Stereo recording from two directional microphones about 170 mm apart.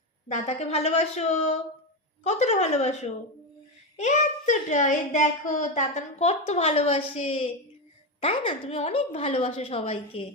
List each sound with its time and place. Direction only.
0.3 s a woman's voice: 40° left (ahead or behind)